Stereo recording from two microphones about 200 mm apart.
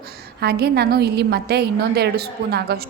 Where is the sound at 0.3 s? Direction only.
50° right (ahead or behind).